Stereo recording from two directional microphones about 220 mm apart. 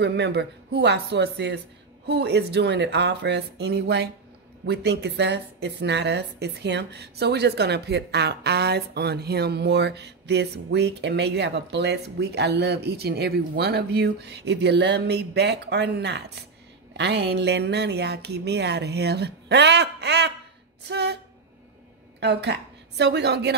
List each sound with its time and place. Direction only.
0.0 s speech: 50° right (ahead or behind)
22.2 s a woman's voice: 50° right (ahead or behind)